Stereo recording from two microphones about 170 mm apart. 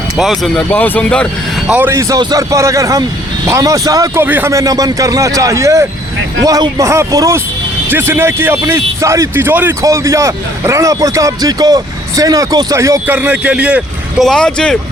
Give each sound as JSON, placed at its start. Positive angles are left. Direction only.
{"t": 0.2, "sound": "speech", "side_deg": 0}
{"t": 1.6, "sound": "a man's voice", "side_deg": -10}